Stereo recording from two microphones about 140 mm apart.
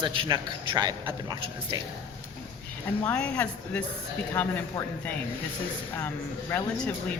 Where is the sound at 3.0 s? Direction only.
10° left (ahead or behind).